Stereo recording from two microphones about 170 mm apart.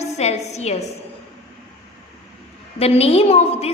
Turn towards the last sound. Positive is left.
turn(degrees=35)  # may be behind; listen again after turning